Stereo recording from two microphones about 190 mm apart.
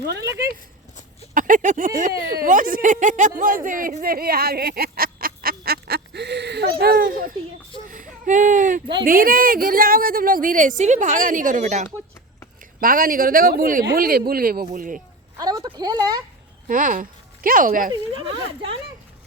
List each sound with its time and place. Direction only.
0.0 s speech: 60° right (ahead or behind)
1.3 s speech: 45° right (ahead or behind)
7.9 s a sound: 45° right (ahead or behind)
9.0 s speech: 50° right (ahead or behind)
15.4 s speech: 20° right (ahead or behind)
16.6 s speech: 45° right (ahead or behind)